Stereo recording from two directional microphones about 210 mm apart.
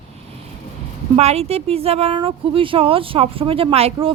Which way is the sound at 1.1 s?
30° right (ahead or behind).